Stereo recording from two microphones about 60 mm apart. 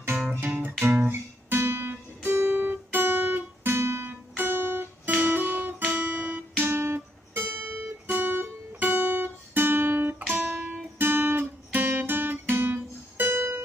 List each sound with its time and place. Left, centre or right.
0.3 s music: right
0.9 s guitar: right
6.6 s guitar: right
10.3 s music: right